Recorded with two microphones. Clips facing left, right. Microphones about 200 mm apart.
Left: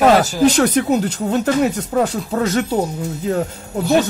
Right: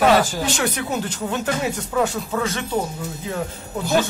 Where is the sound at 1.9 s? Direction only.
40° left (ahead or behind).